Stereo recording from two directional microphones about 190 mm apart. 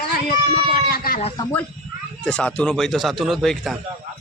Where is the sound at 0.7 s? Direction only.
50° left (ahead or behind).